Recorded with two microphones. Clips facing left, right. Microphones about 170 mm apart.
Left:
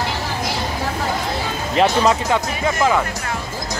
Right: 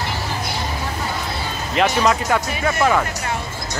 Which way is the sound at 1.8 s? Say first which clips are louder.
Left 2 dB; 25° left (ahead or behind).